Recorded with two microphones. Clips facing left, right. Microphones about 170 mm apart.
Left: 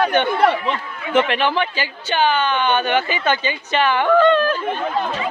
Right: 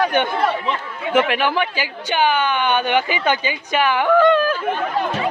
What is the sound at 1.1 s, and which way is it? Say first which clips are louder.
Speech: even; 10° right (ahead or behind).